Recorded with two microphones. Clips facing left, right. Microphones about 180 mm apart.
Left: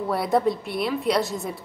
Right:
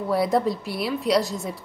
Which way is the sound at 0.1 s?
Centre (ahead or behind).